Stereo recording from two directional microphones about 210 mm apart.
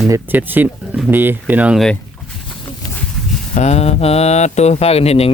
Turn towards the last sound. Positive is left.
turn(degrees=30)  # may be behind; listen again after turning